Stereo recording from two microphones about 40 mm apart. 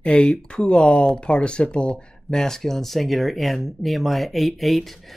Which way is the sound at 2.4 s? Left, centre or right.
Centre.